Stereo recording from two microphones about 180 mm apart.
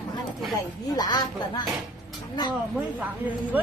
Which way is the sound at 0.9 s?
20° left (ahead or behind).